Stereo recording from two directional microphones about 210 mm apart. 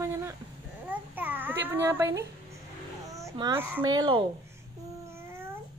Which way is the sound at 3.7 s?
20° right (ahead or behind).